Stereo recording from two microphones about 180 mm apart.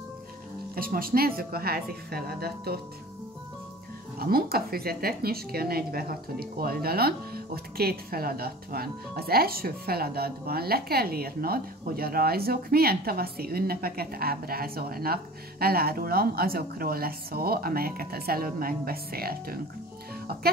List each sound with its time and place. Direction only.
0.7 s speech: 55° right (ahead or behind)
4.2 s speech: 55° right (ahead or behind)